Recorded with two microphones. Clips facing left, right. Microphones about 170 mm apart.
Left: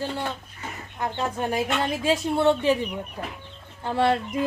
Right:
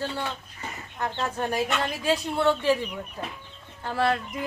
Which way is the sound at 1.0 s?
10° left (ahead or behind).